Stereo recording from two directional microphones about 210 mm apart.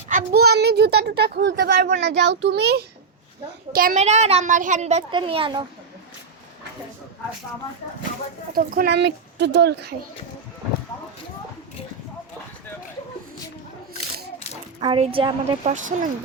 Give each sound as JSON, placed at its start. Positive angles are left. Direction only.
{"t": 0.1, "sound": "a child's voice", "side_deg": -45}
{"t": 8.5, "sound": "speech", "side_deg": -45}
{"t": 14.8, "sound": "a woman's voice", "side_deg": -25}
{"t": 15.6, "sound": "a child's voice", "side_deg": -35}